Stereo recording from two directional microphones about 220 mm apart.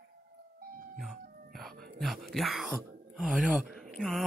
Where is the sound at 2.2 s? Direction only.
Centre (ahead or behind).